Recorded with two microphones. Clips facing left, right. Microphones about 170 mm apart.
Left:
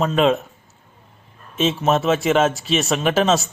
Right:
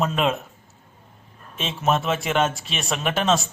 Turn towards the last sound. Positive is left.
turn(degrees=0)  # may be behind; listen again after turning